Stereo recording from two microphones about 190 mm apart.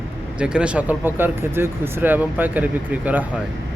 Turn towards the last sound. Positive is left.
turn(degrees=-10)  # may be behind; listen again after turning